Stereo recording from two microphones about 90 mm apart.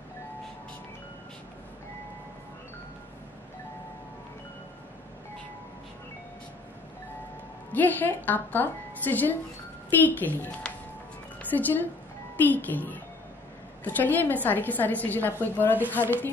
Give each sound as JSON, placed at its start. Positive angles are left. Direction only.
{"t": 7.7, "sound": "a woman's voice", "side_deg": 20}